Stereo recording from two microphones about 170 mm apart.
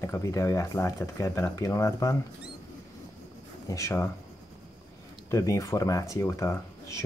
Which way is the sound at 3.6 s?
20° left (ahead or behind).